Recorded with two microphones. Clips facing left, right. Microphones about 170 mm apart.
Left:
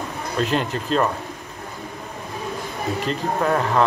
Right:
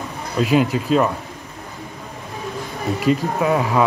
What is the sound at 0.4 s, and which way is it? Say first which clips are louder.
Speech: right 6 dB; 5° right (ahead or behind).